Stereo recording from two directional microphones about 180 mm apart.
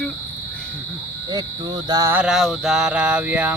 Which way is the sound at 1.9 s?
20° right (ahead or behind).